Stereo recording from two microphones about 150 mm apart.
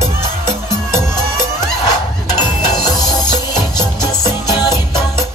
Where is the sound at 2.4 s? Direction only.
25° left (ahead or behind).